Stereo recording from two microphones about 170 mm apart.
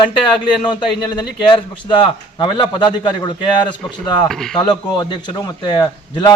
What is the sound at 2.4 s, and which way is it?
Speech, 30° left (ahead or behind).